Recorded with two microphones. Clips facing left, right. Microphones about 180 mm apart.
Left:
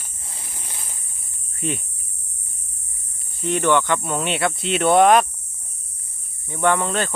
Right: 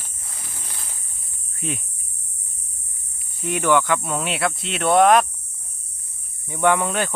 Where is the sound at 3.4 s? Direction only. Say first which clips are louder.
Left 1 dB; 10° right (ahead or behind).